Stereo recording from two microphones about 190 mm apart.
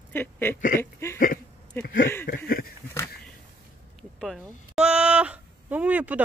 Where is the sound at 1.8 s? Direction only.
45° left (ahead or behind).